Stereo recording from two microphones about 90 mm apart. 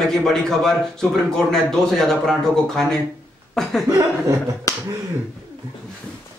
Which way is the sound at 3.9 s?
35° right (ahead or behind).